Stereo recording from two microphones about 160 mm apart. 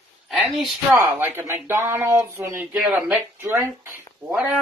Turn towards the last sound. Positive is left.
turn(degrees=-5)  # may be behind; listen again after turning